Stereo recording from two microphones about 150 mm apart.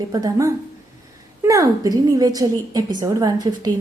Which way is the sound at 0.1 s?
25° right (ahead or behind).